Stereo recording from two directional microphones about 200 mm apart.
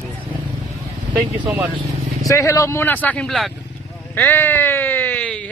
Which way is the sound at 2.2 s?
15° left (ahead or behind).